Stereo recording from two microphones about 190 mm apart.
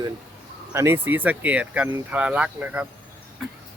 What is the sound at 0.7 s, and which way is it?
Speech, 15° right (ahead or behind).